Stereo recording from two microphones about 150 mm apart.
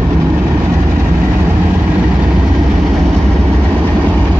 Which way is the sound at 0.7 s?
20° right (ahead or behind).